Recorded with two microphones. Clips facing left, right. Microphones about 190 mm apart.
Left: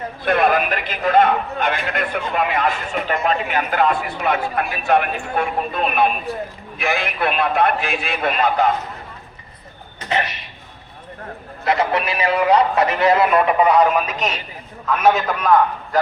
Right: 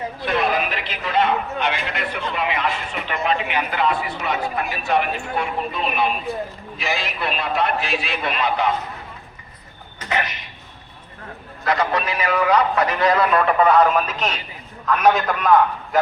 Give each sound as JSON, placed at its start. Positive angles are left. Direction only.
{"t": 0.3, "sound": "a man's voice", "side_deg": 55}
{"t": 11.6, "sound": "a man's voice", "side_deg": 25}